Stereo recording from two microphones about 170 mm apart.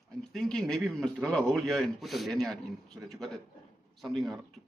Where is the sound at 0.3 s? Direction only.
5° left (ahead or behind).